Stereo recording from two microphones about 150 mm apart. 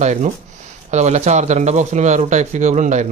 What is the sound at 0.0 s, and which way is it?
Speech, 50° right (ahead or behind).